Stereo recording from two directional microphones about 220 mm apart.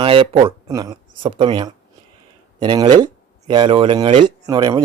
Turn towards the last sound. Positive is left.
turn(degrees=-20)  # may be behind; listen again after turning